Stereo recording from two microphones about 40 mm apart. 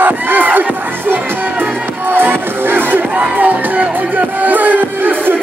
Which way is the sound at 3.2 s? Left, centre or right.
Right.